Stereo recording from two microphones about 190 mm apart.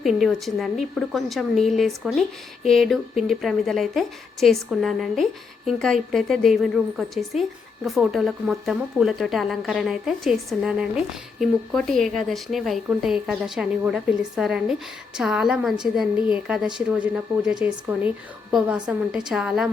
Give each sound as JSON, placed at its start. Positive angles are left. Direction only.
{"t": 0.0, "sound": "a woman's voice", "side_deg": 0}
{"t": 16.1, "sound": "speech", "side_deg": 25}
{"t": 16.7, "sound": "a woman's voice", "side_deg": -5}